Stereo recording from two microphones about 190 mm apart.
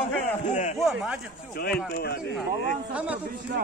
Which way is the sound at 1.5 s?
50° left (ahead or behind).